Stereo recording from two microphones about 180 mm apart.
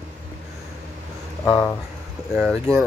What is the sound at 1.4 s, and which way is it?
Speech, 10° left (ahead or behind).